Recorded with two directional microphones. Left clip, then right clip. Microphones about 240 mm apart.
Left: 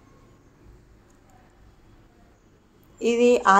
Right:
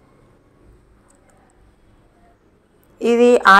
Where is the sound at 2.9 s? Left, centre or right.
Centre.